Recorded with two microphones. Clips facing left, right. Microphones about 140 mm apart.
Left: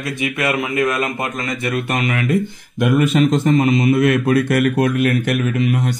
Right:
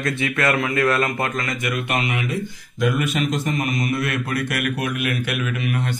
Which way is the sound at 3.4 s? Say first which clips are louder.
Left 9 dB; 25° left (ahead or behind).